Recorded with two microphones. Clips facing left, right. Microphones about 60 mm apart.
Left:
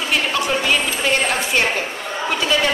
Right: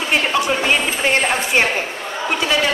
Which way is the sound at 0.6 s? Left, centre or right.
Right.